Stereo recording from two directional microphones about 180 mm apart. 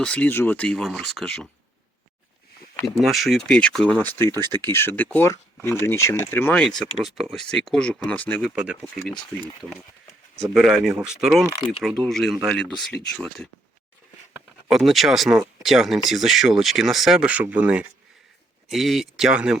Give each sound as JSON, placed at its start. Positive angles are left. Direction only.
{"t": 0.0, "sound": "speech", "side_deg": 5}
{"t": 2.8, "sound": "speech", "side_deg": 0}
{"t": 4.4, "sound": "speech", "side_deg": -25}
{"t": 4.6, "sound": "speech", "side_deg": 15}
{"t": 8.4, "sound": "speech", "side_deg": -5}
{"t": 10.4, "sound": "speech", "side_deg": 0}
{"t": 14.7, "sound": "speech", "side_deg": 0}